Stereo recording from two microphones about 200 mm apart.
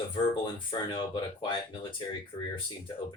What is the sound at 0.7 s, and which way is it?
Speech, 25° left (ahead or behind).